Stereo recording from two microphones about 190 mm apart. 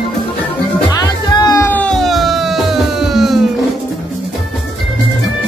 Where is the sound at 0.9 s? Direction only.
20° left (ahead or behind).